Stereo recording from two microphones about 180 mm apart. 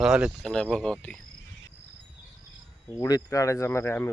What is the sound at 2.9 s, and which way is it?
Speech, 20° left (ahead or behind).